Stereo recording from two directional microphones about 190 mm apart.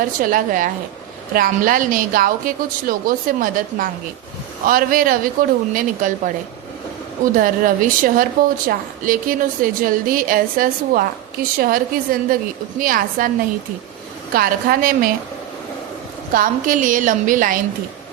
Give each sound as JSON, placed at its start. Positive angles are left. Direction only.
{"t": 0.2, "sound": "speech", "side_deg": -45}
{"t": 7.3, "sound": "speech", "side_deg": -45}
{"t": 14.3, "sound": "speech", "side_deg": -50}
{"t": 16.3, "sound": "speech", "side_deg": -45}